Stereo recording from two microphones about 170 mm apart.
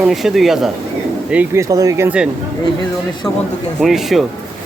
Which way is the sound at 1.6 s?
20° right (ahead or behind).